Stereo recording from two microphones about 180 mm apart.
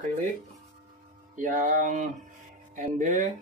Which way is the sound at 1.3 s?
45° right (ahead or behind).